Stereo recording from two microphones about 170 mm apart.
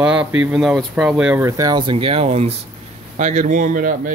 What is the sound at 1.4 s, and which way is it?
Speech, 20° right (ahead or behind).